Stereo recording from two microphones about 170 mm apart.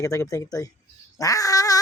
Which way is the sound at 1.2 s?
20° left (ahead or behind).